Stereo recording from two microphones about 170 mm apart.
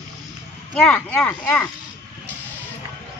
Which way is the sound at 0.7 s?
5° left (ahead or behind).